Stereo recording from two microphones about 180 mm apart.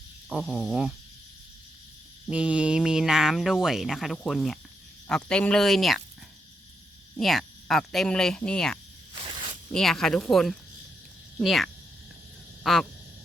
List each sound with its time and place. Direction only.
0.3 s speech: centre (ahead or behind)
2.3 s speech: 5° right (ahead or behind)
7.2 s speech: centre (ahead or behind)
9.1 s snake: 25° right (ahead or behind)
9.7 s speech: centre (ahead or behind)
12.6 s a sound: centre (ahead or behind)